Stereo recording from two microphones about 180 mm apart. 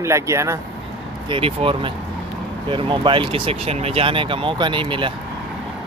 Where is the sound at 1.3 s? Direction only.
30° right (ahead or behind).